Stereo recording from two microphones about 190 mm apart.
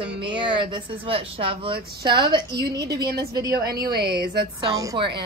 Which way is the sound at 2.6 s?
60° right (ahead or behind).